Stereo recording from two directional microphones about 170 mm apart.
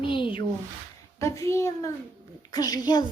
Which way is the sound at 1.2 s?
15° left (ahead or behind).